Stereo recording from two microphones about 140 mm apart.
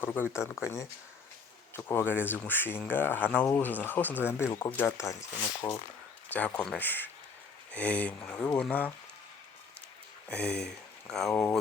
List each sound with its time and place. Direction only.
0.0 s speech: 15° left (ahead or behind)
6.2 s speech: 10° left (ahead or behind)
10.2 s speech: 5° left (ahead or behind)